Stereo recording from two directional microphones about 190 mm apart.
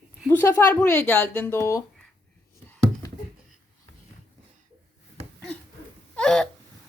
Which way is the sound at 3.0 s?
20° left (ahead or behind).